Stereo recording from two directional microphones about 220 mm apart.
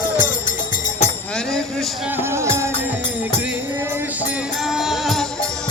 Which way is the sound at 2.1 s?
10° right (ahead or behind).